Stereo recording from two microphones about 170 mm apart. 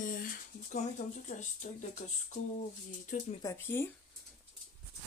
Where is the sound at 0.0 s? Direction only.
55° left (ahead or behind).